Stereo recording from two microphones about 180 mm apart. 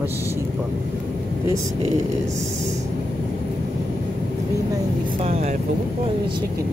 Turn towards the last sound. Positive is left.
turn(degrees=-35)  # may be behind; listen again after turning